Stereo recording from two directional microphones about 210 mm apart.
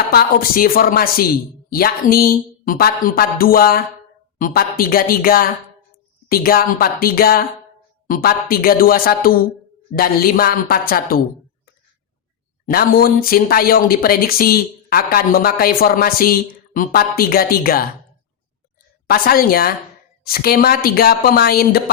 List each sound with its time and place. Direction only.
0.1 s speech: 45° left (ahead or behind)
12.6 s speech: 45° left (ahead or behind)
19.0 s speech: 45° left (ahead or behind)